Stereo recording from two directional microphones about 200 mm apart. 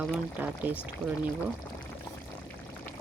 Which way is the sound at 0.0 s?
5° right (ahead or behind).